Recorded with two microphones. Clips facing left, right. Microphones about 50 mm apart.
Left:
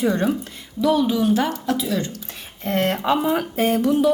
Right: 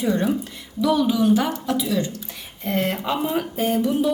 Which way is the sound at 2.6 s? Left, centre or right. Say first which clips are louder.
Left 3 dB; left.